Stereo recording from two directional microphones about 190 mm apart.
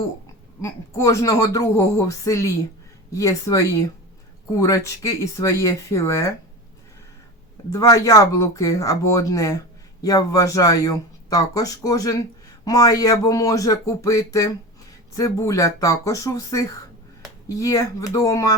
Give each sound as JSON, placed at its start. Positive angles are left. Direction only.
{"t": 0.6, "sound": "speech", "side_deg": 15}
{"t": 7.7, "sound": "speech", "side_deg": 15}